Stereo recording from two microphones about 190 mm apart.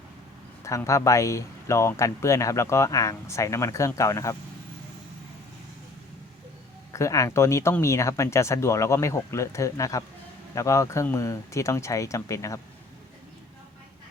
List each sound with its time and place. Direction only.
0.6 s speech: 15° left (ahead or behind)
6.9 s speech: 15° left (ahead or behind)